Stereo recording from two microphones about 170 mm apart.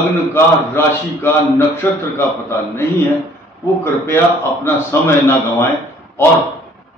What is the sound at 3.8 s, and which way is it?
A man's voice, 15° left (ahead or behind).